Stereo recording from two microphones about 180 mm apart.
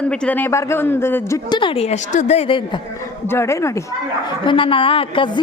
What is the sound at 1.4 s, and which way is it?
A woman's voice, 25° left (ahead or behind).